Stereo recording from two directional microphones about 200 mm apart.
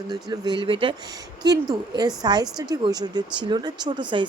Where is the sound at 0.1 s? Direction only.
20° right (ahead or behind).